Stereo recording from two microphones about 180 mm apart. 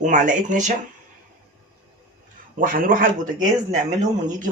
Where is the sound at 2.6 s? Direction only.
50° right (ahead or behind).